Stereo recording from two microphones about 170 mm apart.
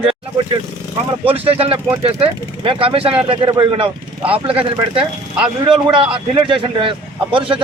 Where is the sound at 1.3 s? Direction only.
35° right (ahead or behind).